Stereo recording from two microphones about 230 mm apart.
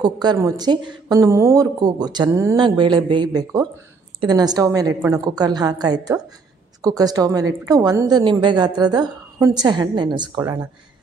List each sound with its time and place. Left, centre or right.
0.0 s a woman's voice: centre